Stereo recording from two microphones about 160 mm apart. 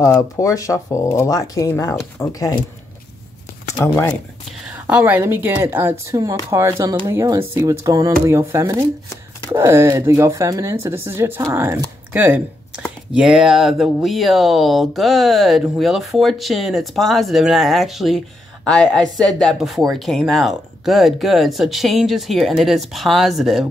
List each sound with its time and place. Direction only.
0.0 s speech: 20° left (ahead or behind)
3.7 s speech: 15° left (ahead or behind)
4.8 s speech: 10° right (ahead or behind)